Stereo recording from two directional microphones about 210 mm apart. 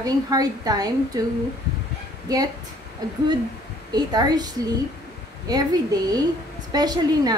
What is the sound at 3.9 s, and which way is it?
A woman's voice, 20° right (ahead or behind).